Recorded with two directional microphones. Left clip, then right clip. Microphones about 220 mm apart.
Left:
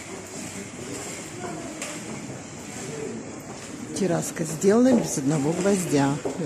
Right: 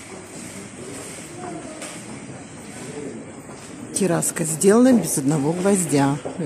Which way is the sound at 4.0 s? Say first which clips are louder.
Right 4 dB; 20° right (ahead or behind).